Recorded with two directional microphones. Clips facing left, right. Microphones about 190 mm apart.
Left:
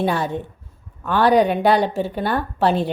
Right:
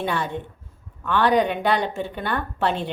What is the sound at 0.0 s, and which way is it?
Speech, 35° left (ahead or behind).